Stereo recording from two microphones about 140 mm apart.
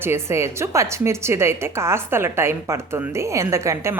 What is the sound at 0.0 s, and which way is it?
A woman's voice, 15° right (ahead or behind).